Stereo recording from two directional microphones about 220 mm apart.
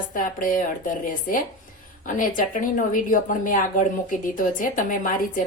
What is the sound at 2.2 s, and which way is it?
A woman's voice, 35° left (ahead or behind).